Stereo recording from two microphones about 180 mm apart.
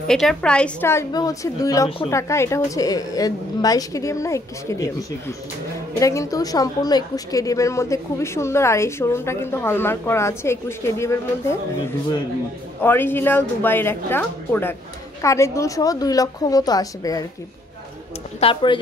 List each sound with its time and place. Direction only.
0.1 s a woman's voice: 5° left (ahead or behind)
5.9 s a woman's voice: 20° left (ahead or behind)
18.4 s a woman's voice: 30° left (ahead or behind)